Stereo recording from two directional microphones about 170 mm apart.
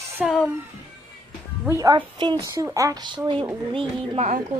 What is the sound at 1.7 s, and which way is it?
Speech, 20° right (ahead or behind).